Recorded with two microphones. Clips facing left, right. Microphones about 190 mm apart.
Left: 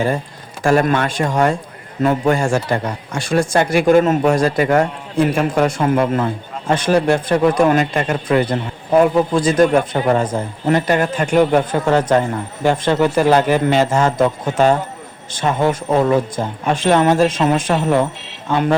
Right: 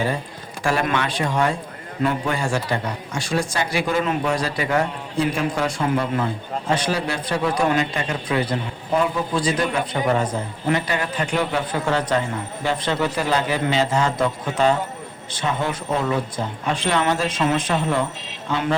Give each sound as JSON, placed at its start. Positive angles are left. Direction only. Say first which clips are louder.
{"t": 0.6, "sound": "speech", "louder": "left 7 dB", "side_deg": 45}